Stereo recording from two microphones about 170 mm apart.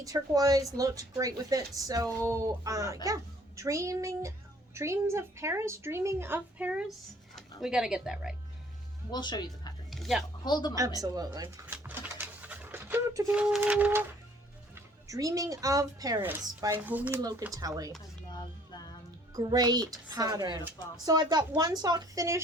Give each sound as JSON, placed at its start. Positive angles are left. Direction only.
{"t": 0.0, "sound": "a woman's voice", "side_deg": -20}
{"t": 9.1, "sound": "speech", "side_deg": 25}
{"t": 9.9, "sound": "a sound", "side_deg": 0}
{"t": 10.4, "sound": "speech", "side_deg": 25}
{"t": 10.8, "sound": "speech", "side_deg": -20}
{"t": 11.6, "sound": "speech", "side_deg": -10}
{"t": 14.8, "sound": "a woman's voice", "side_deg": -20}
{"t": 17.4, "sound": "speech", "side_deg": -20}
{"t": 18.3, "sound": "music", "side_deg": 25}
{"t": 19.4, "sound": "speech", "side_deg": -25}